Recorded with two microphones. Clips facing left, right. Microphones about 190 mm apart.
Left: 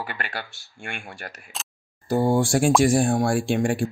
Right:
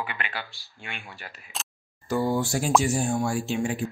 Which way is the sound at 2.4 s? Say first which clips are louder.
Left 5 dB; 85° left.